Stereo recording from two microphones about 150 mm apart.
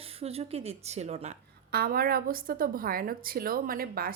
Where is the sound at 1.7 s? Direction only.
90° right.